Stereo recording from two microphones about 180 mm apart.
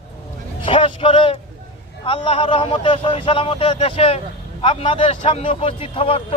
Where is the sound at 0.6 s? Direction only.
30° left (ahead or behind).